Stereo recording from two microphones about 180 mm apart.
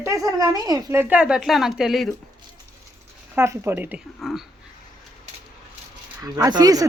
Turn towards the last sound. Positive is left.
turn(degrees=-20)  # may be behind; listen again after turning